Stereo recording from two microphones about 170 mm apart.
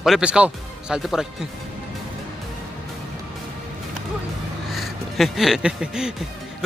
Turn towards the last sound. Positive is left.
turn(degrees=-5)  # may be behind; listen again after turning